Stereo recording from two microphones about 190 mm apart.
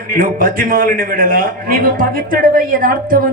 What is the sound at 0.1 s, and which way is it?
A man's voice, 45° right (ahead or behind).